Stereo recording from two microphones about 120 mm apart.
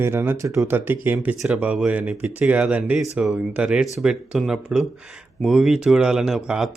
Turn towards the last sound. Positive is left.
turn(degrees=-5)  # may be behind; listen again after turning